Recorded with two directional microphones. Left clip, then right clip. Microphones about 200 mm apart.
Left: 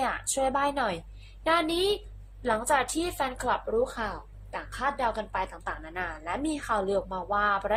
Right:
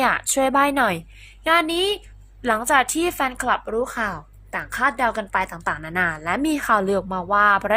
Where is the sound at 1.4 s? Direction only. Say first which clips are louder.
Right 6 dB; 20° right (ahead or behind).